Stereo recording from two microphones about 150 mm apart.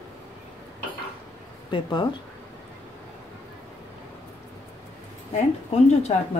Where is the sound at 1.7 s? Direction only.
30° left (ahead or behind).